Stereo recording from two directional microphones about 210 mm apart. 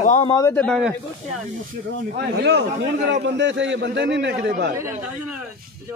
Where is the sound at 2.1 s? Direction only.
50° right (ahead or behind).